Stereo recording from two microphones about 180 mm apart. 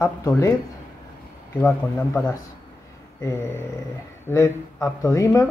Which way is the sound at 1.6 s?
10° left (ahead or behind).